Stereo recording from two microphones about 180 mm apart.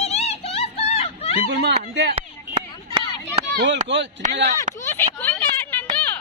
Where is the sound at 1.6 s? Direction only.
70° right (ahead or behind).